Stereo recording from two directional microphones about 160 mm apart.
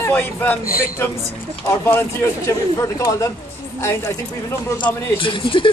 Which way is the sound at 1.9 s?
15° left (ahead or behind).